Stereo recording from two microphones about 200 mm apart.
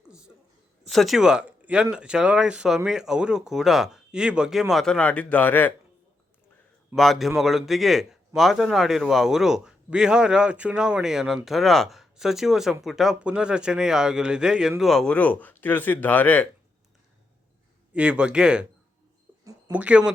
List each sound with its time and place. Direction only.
0.9 s a man's voice: centre (ahead or behind)
6.9 s a man's voice: centre (ahead or behind)
17.9 s a man's voice: 5° right (ahead or behind)
19.5 s a sound: 15° right (ahead or behind)
19.8 s a man's voice: 5° right (ahead or behind)